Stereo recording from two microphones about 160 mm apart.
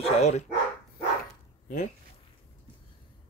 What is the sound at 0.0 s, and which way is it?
Speech, 45° left (ahead or behind).